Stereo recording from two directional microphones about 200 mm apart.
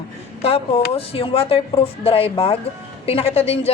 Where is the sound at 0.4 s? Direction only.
30° left (ahead or behind).